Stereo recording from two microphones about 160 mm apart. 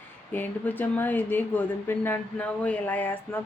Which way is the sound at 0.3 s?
10° left (ahead or behind).